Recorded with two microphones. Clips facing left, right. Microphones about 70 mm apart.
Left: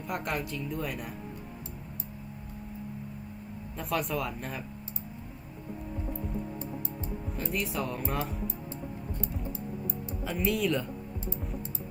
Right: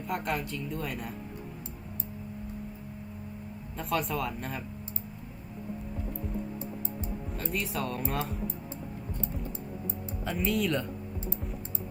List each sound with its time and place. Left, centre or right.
0.1 s speech: centre
3.8 s speech: centre
7.5 s speech: centre
9.2 s music: right
10.2 s speech: centre